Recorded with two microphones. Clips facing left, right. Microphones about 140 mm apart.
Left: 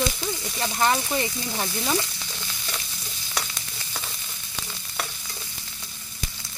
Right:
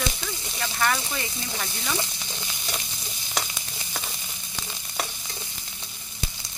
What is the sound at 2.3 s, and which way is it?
Sizzle, 20° right (ahead or behind).